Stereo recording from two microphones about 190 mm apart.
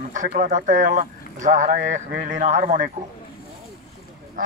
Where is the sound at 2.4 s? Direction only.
40° right (ahead or behind).